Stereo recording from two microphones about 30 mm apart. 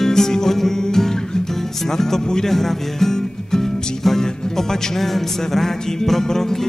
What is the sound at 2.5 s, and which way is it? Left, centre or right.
Music, centre.